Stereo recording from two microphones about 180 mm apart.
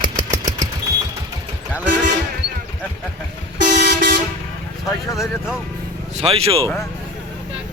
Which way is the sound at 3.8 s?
65° right (ahead or behind).